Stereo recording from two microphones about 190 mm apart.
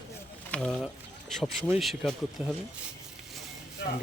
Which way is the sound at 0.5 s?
5° left (ahead or behind).